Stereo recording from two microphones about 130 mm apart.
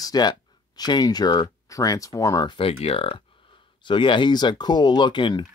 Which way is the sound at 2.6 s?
50° left (ahead or behind).